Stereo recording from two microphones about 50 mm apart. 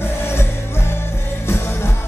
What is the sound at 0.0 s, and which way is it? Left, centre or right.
Music, left.